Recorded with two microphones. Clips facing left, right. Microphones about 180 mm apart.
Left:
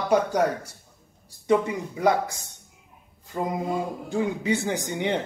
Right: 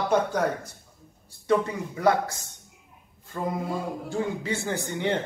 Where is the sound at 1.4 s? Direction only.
15° left (ahead or behind).